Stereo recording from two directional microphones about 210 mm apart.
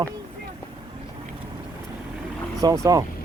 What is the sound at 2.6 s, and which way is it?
Speech, 15° right (ahead or behind).